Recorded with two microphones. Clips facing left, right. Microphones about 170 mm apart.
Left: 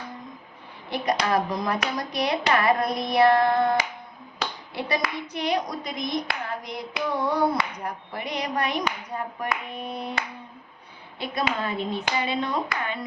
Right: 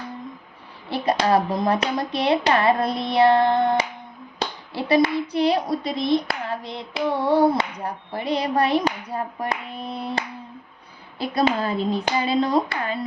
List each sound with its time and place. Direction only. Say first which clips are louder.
0.9 s speech: right 4 dB; 30° right (ahead or behind)
4.4 s clapping: right 3 dB; 30° right (ahead or behind)